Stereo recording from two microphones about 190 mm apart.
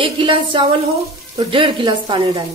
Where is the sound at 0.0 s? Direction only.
25° right (ahead or behind).